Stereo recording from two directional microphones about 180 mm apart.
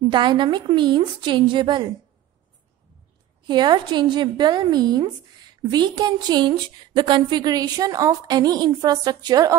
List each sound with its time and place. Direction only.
0.1 s a woman's voice: 25° right (ahead or behind)
3.4 s a woman's voice: 25° right (ahead or behind)